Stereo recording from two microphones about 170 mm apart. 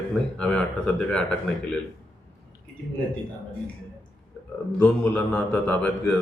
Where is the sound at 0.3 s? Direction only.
5° left (ahead or behind).